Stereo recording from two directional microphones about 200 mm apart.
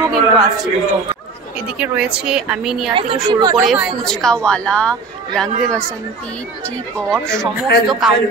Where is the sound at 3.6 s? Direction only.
Centre (ahead or behind).